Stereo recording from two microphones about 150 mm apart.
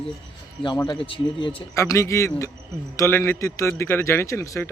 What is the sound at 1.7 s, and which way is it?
A man's voice, 20° left (ahead or behind).